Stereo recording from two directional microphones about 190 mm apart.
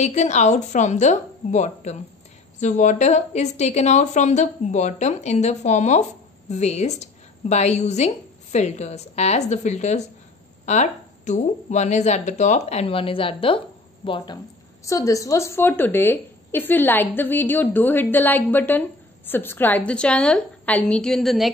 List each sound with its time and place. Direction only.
0.0 s a woman's voice: 35° left (ahead or behind); by 21.5 s centre (ahead or behind)